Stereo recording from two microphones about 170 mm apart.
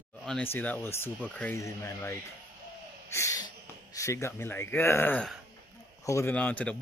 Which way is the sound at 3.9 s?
15° left (ahead or behind).